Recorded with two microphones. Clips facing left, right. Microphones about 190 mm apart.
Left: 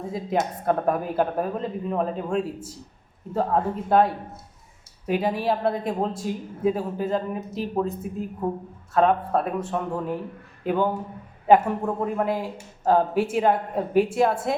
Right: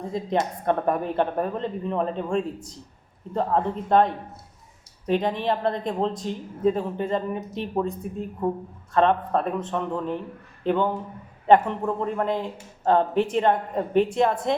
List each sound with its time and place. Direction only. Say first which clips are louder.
0.0 s speech: even; 5° left (ahead or behind)